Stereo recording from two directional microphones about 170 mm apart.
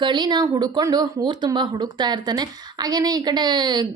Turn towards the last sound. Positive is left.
turn(degrees=-25)  # may be behind; listen again after turning